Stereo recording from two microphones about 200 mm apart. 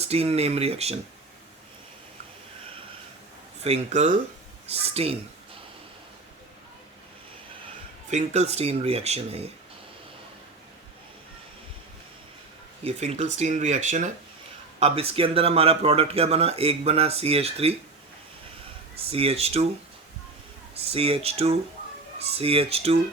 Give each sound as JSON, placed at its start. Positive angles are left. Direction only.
{"t": 0.0, "sound": "speech", "side_deg": -30}
{"t": 3.6, "sound": "speech", "side_deg": -30}
{"t": 8.1, "sound": "speech", "side_deg": -35}
{"t": 12.8, "sound": "speech", "side_deg": -30}
{"t": 18.9, "sound": "speech", "side_deg": -30}
{"t": 20.7, "sound": "speech", "side_deg": -30}